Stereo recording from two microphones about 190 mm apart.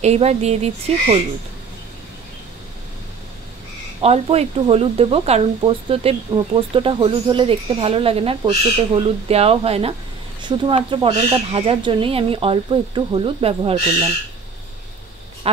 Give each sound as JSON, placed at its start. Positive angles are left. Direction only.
{"t": 0.0, "sound": "speech", "side_deg": -35}
{"t": 4.0, "sound": "speech", "side_deg": -30}
{"t": 15.5, "sound": "speech", "side_deg": -30}